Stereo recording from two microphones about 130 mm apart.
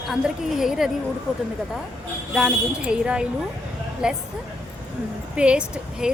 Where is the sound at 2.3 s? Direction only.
5° right (ahead or behind).